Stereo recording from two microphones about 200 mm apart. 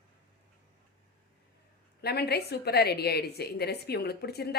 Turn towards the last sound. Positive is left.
turn(degrees=50)  # may be behind; listen again after turning